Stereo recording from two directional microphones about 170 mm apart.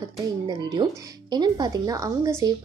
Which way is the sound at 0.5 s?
25° right (ahead or behind).